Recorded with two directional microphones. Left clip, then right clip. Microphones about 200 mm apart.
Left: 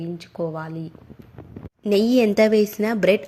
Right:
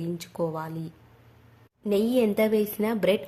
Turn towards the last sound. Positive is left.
turn(degrees=15)  # may be behind; listen again after turning